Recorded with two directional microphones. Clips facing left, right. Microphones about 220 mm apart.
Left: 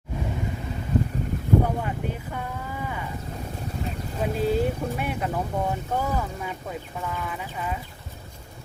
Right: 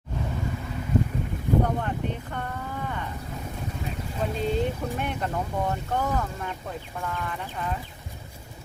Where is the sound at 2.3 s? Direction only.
5° left (ahead or behind).